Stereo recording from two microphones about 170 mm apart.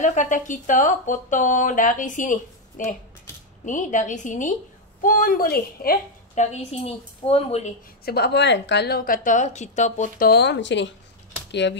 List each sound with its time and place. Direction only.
0.0 s a woman's voice: 45° left (ahead or behind)
6.3 s a woman's voice: 40° left (ahead or behind)
8.0 s a woman's voice: 70° left (ahead or behind); by 11.8 s 90° left